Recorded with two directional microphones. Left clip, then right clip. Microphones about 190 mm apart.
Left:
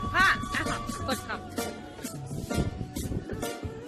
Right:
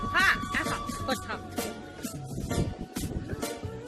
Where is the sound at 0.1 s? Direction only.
15° right (ahead or behind).